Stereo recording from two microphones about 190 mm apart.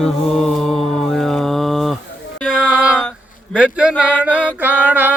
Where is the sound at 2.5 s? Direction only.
5° right (ahead or behind).